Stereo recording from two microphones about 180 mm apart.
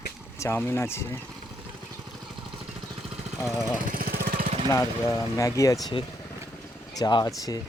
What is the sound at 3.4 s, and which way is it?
Speech, 5° right (ahead or behind).